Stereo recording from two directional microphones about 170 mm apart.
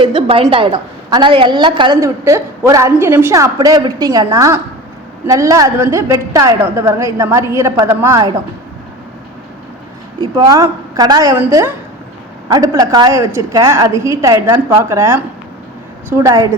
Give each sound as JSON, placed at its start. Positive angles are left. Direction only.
{"t": 0.0, "sound": "a woman's voice", "side_deg": -30}
{"t": 10.3, "sound": "a woman's voice", "side_deg": -20}